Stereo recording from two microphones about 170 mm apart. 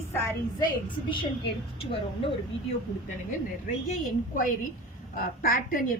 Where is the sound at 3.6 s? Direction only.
50° left (ahead or behind).